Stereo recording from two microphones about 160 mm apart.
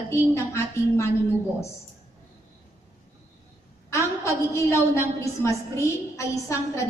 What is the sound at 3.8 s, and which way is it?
A woman's voice, 20° left (ahead or behind).